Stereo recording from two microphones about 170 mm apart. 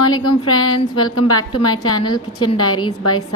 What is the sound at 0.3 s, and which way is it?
A woman's voice, 30° left (ahead or behind).